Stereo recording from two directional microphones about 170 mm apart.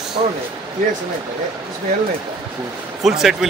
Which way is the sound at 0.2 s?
30° right (ahead or behind).